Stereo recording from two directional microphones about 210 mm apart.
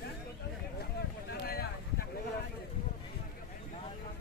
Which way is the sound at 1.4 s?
45° left (ahead or behind).